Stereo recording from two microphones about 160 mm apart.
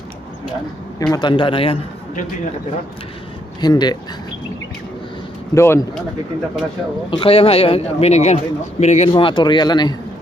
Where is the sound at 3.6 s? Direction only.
25° left (ahead or behind).